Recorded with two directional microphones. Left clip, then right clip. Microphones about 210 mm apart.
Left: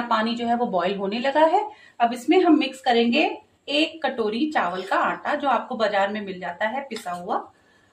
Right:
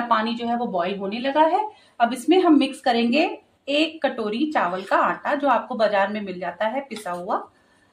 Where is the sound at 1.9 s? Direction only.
30° right (ahead or behind).